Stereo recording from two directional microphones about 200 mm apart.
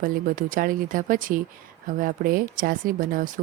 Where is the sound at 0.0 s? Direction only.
45° right (ahead or behind).